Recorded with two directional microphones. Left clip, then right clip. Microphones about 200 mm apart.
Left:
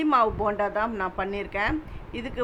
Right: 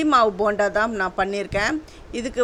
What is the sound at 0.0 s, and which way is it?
A woman's voice, 25° right (ahead or behind).